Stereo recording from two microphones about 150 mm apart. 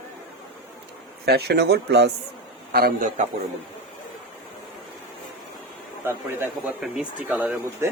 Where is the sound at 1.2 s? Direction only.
90° right.